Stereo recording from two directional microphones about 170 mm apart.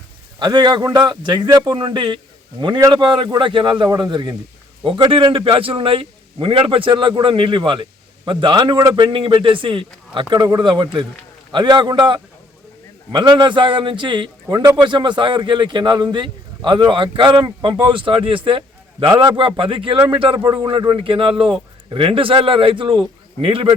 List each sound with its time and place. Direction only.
0.3 s a man's voice: 25° right (ahead or behind)